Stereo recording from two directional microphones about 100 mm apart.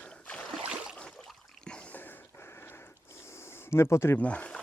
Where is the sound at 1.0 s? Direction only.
5° left (ahead or behind); by 4.1 s 25° left (ahead or behind).